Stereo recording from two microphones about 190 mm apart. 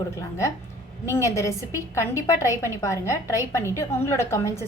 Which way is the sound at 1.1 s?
15° left (ahead or behind).